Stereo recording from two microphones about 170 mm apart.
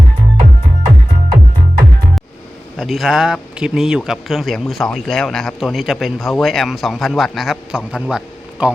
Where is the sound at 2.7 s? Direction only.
Centre (ahead or behind).